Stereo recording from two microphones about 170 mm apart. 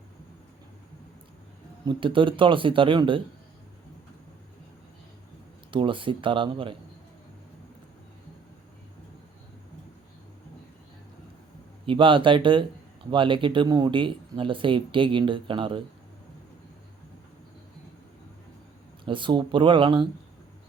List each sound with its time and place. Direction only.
1.8 s speech: 30° right (ahead or behind)
5.7 s speech: 30° right (ahead or behind)
11.9 s speech: 30° right (ahead or behind)
19.0 s speech: 30° right (ahead or behind)